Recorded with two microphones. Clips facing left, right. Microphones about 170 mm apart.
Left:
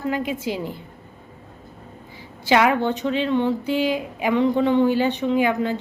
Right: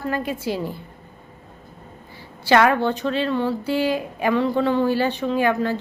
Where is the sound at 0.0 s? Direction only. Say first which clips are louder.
Left 1 dB; 15° left (ahead or behind).